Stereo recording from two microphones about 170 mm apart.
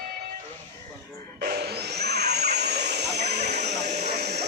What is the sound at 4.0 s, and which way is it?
Vehicle, 75° right (ahead or behind).